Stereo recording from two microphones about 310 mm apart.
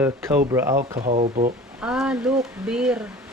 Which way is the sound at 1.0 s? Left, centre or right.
Right.